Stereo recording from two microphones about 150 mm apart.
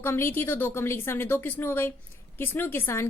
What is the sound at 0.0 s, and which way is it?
A woman's voice, 15° left (ahead or behind).